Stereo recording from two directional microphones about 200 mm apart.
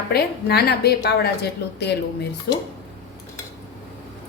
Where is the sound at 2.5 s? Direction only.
55° left (ahead or behind).